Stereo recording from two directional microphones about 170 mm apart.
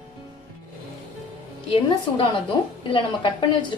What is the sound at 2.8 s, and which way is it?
Speech, 30° left (ahead or behind).